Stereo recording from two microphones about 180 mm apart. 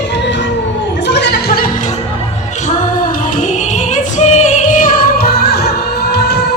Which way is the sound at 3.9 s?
40° left (ahead or behind).